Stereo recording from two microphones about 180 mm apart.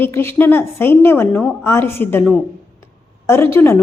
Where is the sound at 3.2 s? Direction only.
15° left (ahead or behind).